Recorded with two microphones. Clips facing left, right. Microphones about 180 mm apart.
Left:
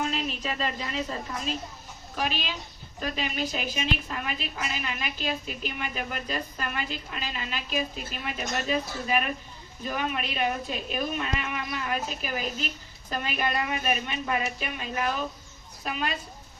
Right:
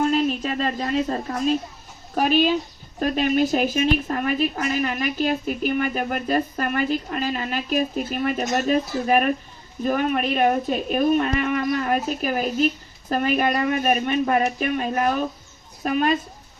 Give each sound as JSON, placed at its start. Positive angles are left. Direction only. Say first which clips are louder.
{"t": 0.0, "sound": "a woman's voice", "louder": "right 10 dB", "side_deg": -50}